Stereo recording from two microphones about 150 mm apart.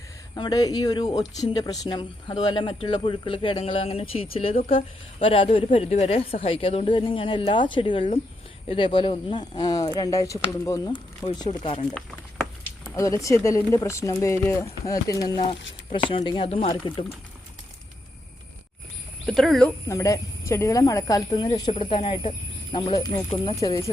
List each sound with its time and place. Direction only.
0.3 s speech: 25° left (ahead or behind)
12.9 s speech: 20° left (ahead or behind)
15.9 s speech: 35° left (ahead or behind)
19.2 s speech: centre (ahead or behind)
19.9 s speech: 20° left (ahead or behind)
23.6 s speech: 20° left (ahead or behind)